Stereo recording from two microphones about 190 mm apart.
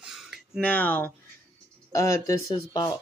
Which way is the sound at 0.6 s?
10° left (ahead or behind).